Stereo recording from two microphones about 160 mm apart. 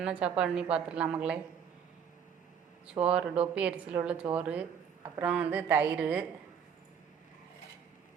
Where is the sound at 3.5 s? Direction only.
10° right (ahead or behind).